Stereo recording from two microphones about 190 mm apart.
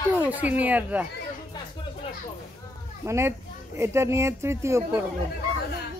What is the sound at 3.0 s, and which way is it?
Speech, 15° right (ahead or behind).